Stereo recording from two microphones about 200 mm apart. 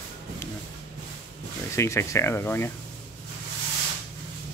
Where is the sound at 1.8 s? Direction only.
15° left (ahead or behind).